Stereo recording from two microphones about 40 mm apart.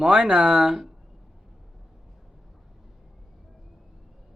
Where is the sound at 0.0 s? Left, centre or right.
Centre.